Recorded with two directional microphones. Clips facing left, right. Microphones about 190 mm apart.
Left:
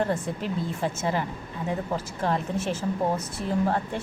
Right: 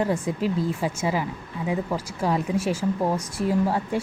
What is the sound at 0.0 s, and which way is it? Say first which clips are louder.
A woman's voice: right 3 dB; 10° right (ahead or behind).